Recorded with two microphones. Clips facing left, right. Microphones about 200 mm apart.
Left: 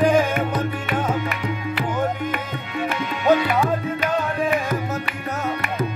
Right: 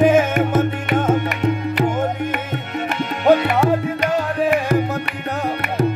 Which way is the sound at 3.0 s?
65° right (ahead or behind).